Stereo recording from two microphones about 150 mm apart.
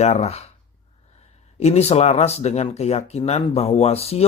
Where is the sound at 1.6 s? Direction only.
45° left (ahead or behind).